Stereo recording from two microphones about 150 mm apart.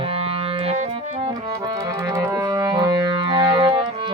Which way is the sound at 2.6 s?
25° right (ahead or behind).